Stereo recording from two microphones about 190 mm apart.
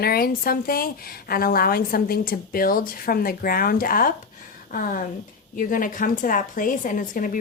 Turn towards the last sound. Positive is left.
turn(degrees=45)  # may be behind; listen again after turning